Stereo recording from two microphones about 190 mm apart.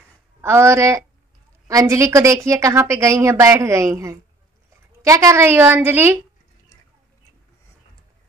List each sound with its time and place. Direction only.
0.4 s a woman's voice: 15° right (ahead or behind)